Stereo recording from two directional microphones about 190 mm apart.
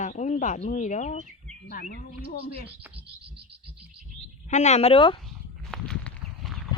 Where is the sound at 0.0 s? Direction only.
40° left (ahead or behind).